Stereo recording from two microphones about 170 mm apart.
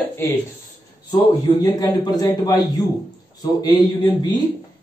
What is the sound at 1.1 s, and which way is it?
A man's voice, 20° left (ahead or behind).